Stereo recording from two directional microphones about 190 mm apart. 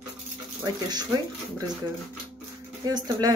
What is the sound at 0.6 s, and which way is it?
Speech, 20° right (ahead or behind).